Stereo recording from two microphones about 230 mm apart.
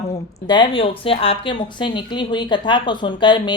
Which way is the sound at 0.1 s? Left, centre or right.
Centre.